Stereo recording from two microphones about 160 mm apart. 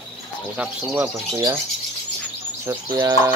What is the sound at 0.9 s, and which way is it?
Speech, centre (ahead or behind).